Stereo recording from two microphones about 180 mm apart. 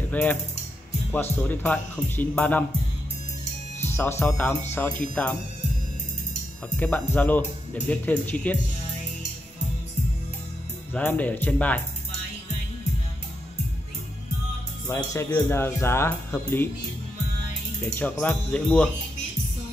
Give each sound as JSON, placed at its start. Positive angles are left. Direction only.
{"t": 0.1, "sound": "speech", "side_deg": 10}
{"t": 3.8, "sound": "speech", "side_deg": 10}
{"t": 7.2, "sound": "speech", "side_deg": 10}
{"t": 10.9, "sound": "speech", "side_deg": 10}
{"t": 14.9, "sound": "speech", "side_deg": 15}
{"t": 17.8, "sound": "speech", "side_deg": 10}